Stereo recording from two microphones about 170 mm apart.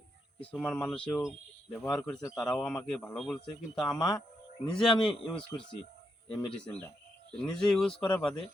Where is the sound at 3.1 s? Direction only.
Centre (ahead or behind).